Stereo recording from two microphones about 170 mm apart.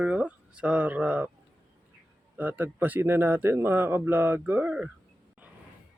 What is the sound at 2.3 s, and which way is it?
Speech, 10° right (ahead or behind).